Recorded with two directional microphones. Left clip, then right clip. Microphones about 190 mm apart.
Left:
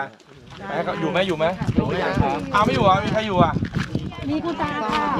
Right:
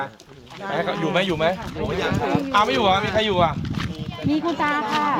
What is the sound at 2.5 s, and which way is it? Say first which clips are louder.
Speech: left 1 dB; centre (ahead or behind).